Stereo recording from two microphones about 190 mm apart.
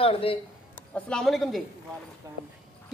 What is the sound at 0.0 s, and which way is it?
Speech, 30° left (ahead or behind).